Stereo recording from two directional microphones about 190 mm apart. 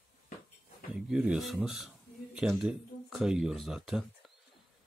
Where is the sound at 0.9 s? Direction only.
5° right (ahead or behind).